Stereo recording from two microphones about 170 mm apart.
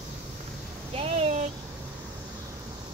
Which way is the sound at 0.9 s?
35° right (ahead or behind).